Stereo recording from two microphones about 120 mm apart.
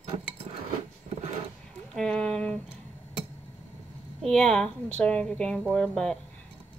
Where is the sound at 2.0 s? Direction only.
10° left (ahead or behind).